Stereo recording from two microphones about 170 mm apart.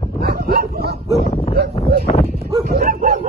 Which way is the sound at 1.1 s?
35° left (ahead or behind).